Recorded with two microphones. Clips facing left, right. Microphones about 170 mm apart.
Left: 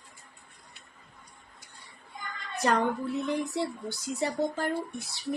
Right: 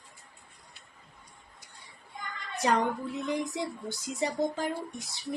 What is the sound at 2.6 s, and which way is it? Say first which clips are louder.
Speech: left 1 dB; 15° right (ahead or behind).